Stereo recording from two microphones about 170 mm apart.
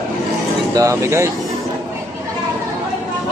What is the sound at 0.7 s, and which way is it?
Speech, 15° right (ahead or behind).